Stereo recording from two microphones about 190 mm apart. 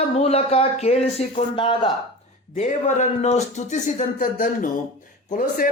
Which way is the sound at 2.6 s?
40° left (ahead or behind).